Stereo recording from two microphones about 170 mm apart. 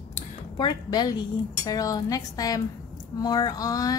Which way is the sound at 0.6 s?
25° left (ahead or behind).